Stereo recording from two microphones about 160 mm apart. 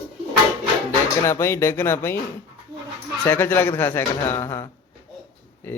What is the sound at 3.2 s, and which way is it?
Speech, 10° left (ahead or behind).